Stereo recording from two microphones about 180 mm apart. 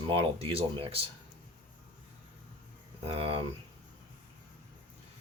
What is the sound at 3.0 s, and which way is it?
Speech, 35° right (ahead or behind).